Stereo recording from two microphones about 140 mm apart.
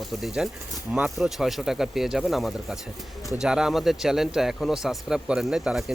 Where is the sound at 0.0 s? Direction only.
Centre (ahead or behind).